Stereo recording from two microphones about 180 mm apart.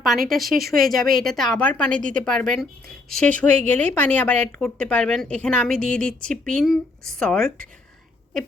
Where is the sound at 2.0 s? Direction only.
45° right (ahead or behind).